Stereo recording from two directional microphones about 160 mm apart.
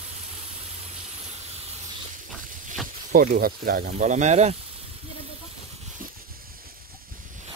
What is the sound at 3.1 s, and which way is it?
Speech, 65° right (ahead or behind).